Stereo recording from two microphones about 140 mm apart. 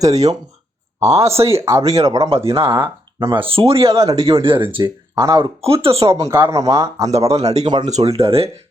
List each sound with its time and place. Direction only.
0.1 s speech: 50° right (ahead or behind)
1.2 s speech: 20° right (ahead or behind)
2.3 s speech: 40° right (ahead or behind)
2.6 s speech: 15° right (ahead or behind)
3.2 s speech: 35° right (ahead or behind)
5.1 s speech: 25° right (ahead or behind)
5.4 s speech: 40° right (ahead or behind)
6.1 s speech: 20° right (ahead or behind)
7.1 s speech: 45° right (ahead or behind)